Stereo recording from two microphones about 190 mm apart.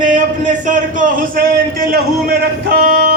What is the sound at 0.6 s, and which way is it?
A man's voice, 45° right (ahead or behind).